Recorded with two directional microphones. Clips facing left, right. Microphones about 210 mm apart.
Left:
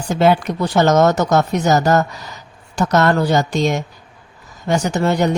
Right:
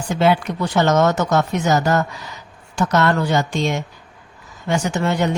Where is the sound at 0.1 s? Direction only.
40° left (ahead or behind).